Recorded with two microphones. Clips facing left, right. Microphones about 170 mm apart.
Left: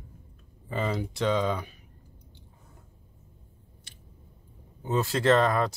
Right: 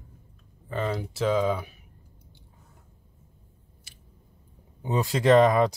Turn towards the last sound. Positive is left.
turn(degrees=-15)  # may be behind; listen again after turning